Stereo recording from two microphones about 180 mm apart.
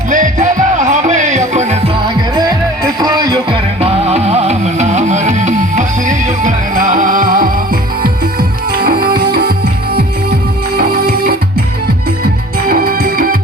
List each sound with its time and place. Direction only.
0.1 s music: 45° right (ahead or behind)
2.0 s music: 25° right (ahead or behind); by 9.5 s 60° right (ahead or behind)
10.8 s music: 55° right (ahead or behind)
12.6 s music: 55° right (ahead or behind)